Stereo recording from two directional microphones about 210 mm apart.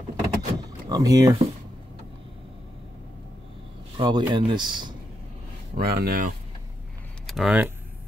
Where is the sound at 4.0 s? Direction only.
20° right (ahead or behind).